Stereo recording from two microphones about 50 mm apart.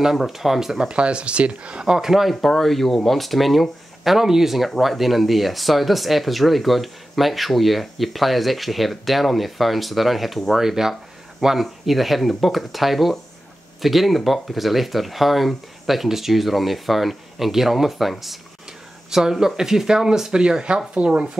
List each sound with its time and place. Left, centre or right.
0.0 s speech: centre
0.7 s speech: centre